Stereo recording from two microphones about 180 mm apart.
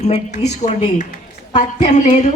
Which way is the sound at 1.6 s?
35° left (ahead or behind).